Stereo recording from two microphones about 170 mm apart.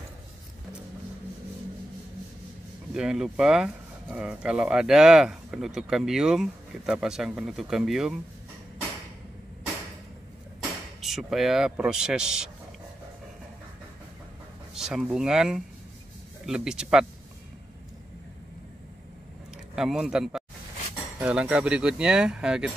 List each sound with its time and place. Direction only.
2.9 s speech: 5° right (ahead or behind)
11.0 s speech: centre (ahead or behind)
14.7 s speech: 5° right (ahead or behind)
19.7 s speech: 5° right (ahead or behind)